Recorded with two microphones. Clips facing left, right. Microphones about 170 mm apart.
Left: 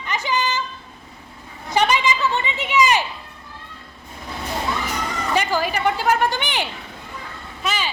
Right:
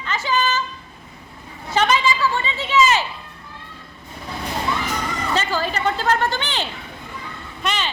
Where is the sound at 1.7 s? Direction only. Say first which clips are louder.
Even; 15° left (ahead or behind).